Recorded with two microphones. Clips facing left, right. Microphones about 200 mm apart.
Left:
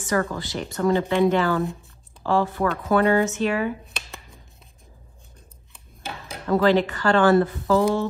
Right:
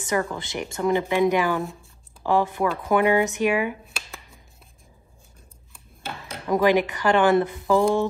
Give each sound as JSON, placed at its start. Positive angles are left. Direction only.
{"t": 0.0, "sound": "speech", "side_deg": -20}
{"t": 6.4, "sound": "speech", "side_deg": -15}